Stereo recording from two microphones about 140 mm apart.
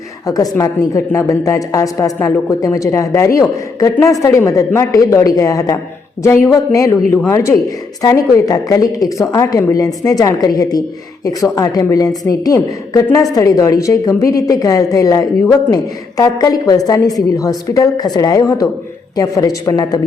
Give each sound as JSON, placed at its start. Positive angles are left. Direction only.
{"t": 0.3, "sound": "a woman's voice", "side_deg": 25}